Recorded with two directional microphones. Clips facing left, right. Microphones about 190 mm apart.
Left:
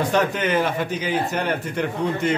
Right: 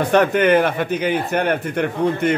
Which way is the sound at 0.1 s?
60° right (ahead or behind).